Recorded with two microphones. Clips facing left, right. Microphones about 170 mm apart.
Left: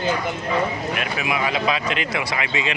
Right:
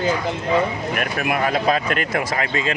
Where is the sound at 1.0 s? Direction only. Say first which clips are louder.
Right 5 dB; 55° right (ahead or behind).